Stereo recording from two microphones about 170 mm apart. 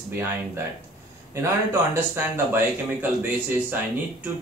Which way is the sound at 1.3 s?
15° right (ahead or behind).